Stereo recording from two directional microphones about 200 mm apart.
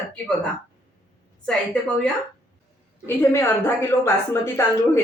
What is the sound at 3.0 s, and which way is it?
A woman's voice, 10° left (ahead or behind).